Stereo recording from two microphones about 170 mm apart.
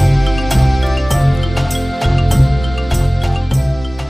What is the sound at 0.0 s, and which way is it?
Music, centre (ahead or behind).